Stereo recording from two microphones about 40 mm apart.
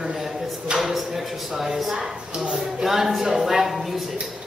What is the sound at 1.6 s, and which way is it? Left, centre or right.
Speech, centre.